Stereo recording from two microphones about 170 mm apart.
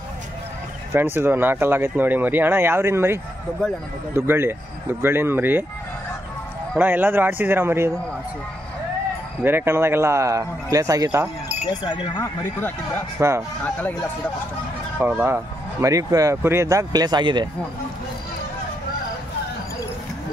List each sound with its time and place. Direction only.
0.9 s speech: 10° right (ahead or behind)
6.8 s speech: 10° right (ahead or behind)
9.4 s speech: 10° right (ahead or behind)
12.2 s speech: 10° left (ahead or behind)
13.2 s speech: 15° right (ahead or behind)
15.0 s speech: 10° right (ahead or behind); by 17.5 s 25° right (ahead or behind)